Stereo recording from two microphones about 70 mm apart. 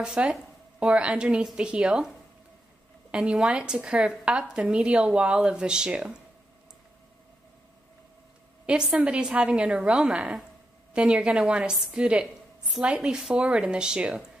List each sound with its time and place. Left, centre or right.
0.0 s a woman's voice: centre
8.6 s a woman's voice: centre